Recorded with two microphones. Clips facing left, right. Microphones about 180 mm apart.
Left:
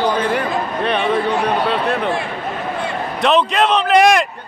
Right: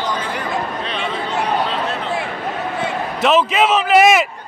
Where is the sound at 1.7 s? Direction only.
60° left (ahead or behind).